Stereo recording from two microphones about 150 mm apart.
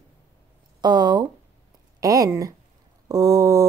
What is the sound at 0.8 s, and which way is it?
A woman's voice, 30° right (ahead or behind).